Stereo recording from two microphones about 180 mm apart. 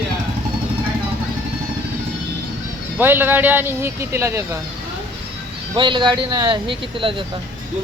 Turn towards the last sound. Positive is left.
turn(degrees=-30)  # may be behind; listen again after turning